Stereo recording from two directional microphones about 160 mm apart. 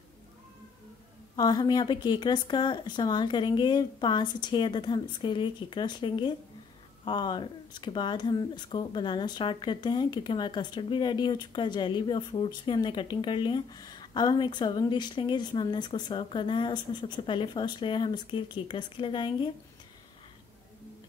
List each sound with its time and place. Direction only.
1.3 s speech: 25° left (ahead or behind)